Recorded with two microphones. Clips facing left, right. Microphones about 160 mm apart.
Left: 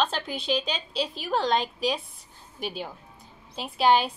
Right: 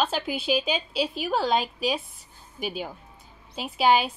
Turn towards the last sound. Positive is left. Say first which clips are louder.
# even
turn(degrees=0)  # may be behind; listen again after turning